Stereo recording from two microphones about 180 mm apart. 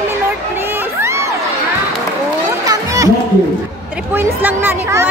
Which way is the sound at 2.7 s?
20° right (ahead or behind).